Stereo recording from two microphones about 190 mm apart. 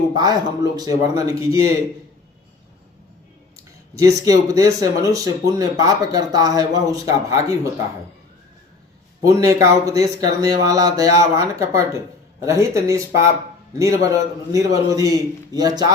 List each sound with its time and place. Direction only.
0.1 s speech: 20° right (ahead or behind)
3.9 s speech: 15° right (ahead or behind)
9.2 s speech: 15° right (ahead or behind)